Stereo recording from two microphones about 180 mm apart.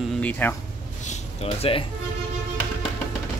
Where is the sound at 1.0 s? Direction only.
40° left (ahead or behind).